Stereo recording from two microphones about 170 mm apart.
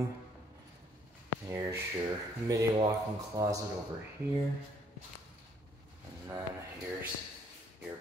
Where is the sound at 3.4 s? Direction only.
15° right (ahead or behind).